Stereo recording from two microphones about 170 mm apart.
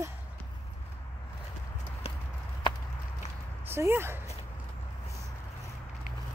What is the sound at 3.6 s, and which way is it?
Speech, 15° right (ahead or behind).